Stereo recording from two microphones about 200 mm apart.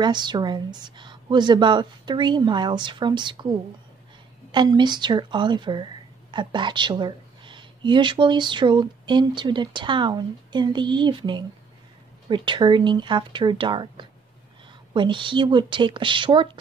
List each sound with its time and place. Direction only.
0.0 s speech: 20° right (ahead or behind)